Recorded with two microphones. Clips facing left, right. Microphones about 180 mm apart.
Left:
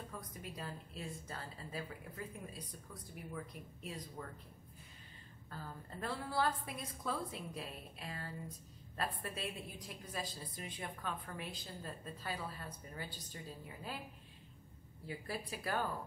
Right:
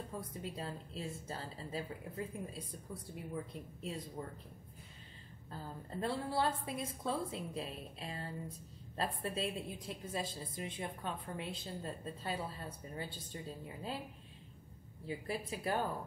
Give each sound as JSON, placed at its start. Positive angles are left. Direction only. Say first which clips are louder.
{"t": 0.2, "sound": "a woman's voice", "louder": "right 4 dB", "side_deg": -30}
{"t": 5.5, "sound": "a woman's voice", "louder": "right 3 dB", "side_deg": -25}
{"t": 15.0, "sound": "a woman's voice", "louder": "right 3 dB", "side_deg": -20}